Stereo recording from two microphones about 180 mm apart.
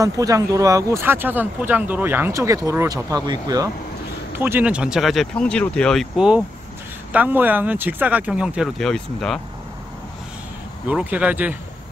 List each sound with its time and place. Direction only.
0.0 s speech: 20° right (ahead or behind); by 9.4 s centre (ahead or behind)
10.9 s speech: 10° right (ahead or behind)